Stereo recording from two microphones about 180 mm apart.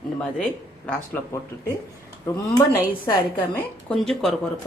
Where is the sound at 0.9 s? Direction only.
15° left (ahead or behind).